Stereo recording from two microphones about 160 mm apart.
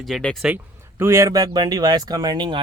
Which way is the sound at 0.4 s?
10° right (ahead or behind).